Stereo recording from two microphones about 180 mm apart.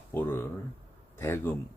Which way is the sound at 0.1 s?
10° left (ahead or behind).